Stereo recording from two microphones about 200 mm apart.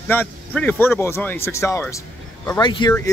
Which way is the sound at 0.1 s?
10° left (ahead or behind).